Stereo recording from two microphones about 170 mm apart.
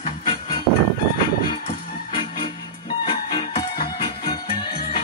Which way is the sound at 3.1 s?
30° left (ahead or behind).